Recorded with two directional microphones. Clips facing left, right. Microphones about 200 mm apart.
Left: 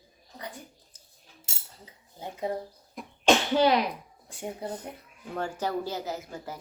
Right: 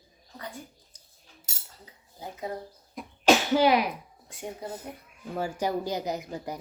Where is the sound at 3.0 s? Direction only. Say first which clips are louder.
Right 1 dB; 5° right (ahead or behind).